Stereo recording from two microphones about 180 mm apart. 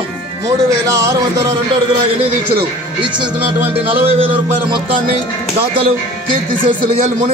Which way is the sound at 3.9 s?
30° right (ahead or behind).